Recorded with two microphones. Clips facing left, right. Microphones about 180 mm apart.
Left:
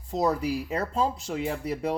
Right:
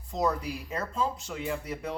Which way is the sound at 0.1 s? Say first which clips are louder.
Left 4 dB; 35° left (ahead or behind).